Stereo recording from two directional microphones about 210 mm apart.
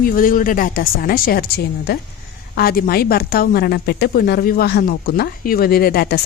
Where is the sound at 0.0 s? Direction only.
40° left (ahead or behind).